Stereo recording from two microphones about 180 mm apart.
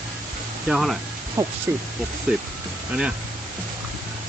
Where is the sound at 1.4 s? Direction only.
20° right (ahead or behind).